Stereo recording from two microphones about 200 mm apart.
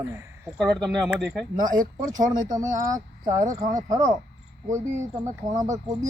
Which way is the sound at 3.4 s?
40° right (ahead or behind).